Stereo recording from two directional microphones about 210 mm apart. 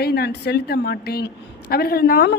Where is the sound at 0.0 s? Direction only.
50° left (ahead or behind).